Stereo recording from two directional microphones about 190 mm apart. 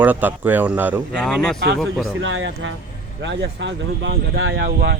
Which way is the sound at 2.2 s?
80° right.